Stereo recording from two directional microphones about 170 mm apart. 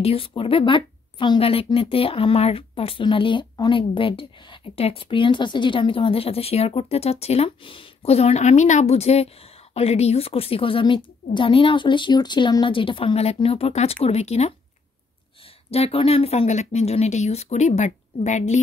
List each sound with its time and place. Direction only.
0.0 s a woman's voice: 35° left (ahead or behind)
15.7 s a woman's voice: 35° left (ahead or behind)